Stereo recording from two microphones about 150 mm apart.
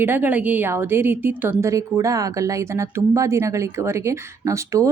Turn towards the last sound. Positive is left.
turn(degrees=-20)  # may be behind; listen again after turning